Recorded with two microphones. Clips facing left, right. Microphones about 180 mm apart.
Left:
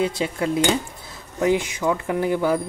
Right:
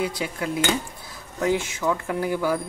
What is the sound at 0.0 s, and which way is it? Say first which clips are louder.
Speech: left 4 dB; 25° left (ahead or behind).